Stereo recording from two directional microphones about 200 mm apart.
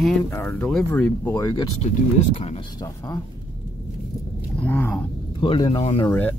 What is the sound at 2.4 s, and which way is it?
Speech, 30° left (ahead or behind).